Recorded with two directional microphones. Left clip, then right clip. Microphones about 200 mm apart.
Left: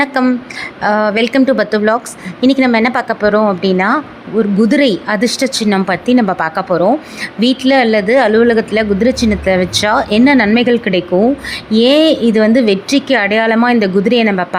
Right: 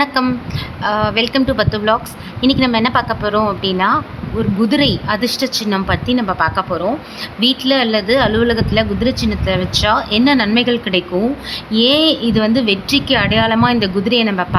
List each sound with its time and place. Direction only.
0.0 s a woman's voice: 20° left (ahead or behind)